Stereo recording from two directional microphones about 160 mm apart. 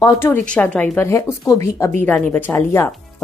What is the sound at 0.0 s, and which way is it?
A woman's voice, 15° left (ahead or behind).